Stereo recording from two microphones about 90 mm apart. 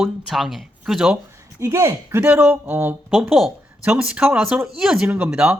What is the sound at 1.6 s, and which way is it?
Speech, 30° right (ahead or behind).